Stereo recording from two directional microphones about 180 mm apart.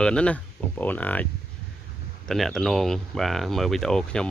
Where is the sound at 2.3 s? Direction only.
Centre (ahead or behind).